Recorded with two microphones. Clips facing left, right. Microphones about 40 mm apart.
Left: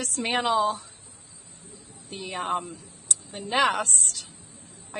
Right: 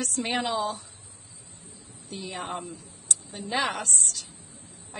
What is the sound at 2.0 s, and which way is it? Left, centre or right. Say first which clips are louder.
A woman's voice: left 5 dB; left.